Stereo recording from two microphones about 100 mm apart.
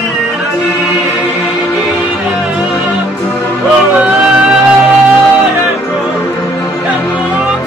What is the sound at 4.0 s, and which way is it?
Music, 15° right (ahead or behind).